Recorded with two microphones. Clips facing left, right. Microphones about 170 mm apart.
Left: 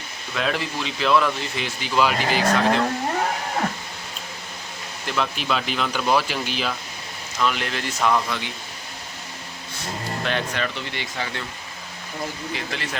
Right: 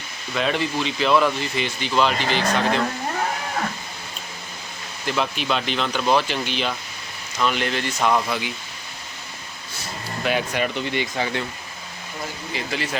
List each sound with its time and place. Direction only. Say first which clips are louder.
0.3 s speech: right 3 dB; centre (ahead or behind)
5.0 s speech: right 1 dB; centre (ahead or behind)
10.2 s speech: right 4 dB; 10° right (ahead or behind)
12.5 s speech: right 7 dB; centre (ahead or behind)